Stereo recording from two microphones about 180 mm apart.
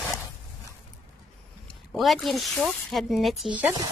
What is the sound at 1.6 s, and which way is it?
Speech, centre (ahead or behind).